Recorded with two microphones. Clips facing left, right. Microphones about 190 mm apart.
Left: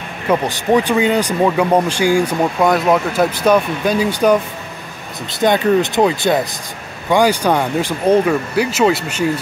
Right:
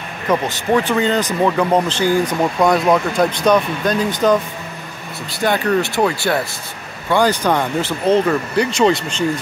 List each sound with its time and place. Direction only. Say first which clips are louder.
0.3 s speech: left 2 dB; 15° left (ahead or behind)
5.4 s speech: left 4 dB; 20° left (ahead or behind)